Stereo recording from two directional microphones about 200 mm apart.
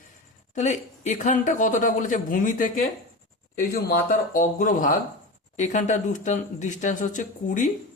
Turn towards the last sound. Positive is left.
turn(degrees=40)  # may be behind; listen again after turning